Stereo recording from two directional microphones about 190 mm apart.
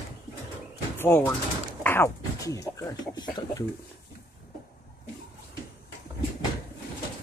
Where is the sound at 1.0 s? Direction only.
10° left (ahead or behind).